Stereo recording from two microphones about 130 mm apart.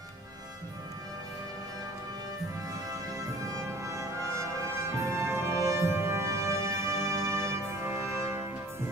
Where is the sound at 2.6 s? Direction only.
25° right (ahead or behind).